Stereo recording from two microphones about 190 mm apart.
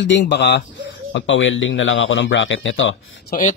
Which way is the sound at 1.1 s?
80° left.